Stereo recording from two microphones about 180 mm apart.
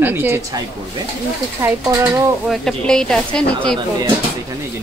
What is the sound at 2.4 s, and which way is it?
Speech, 5° left (ahead or behind).